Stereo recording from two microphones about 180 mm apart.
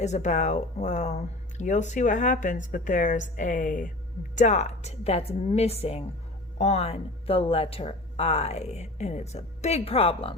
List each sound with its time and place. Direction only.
0.0 s speech: 40° left (ahead or behind)